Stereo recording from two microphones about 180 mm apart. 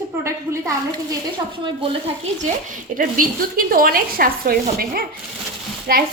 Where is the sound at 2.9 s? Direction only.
50° right (ahead or behind).